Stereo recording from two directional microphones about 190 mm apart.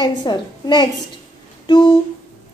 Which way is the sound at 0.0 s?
20° left (ahead or behind).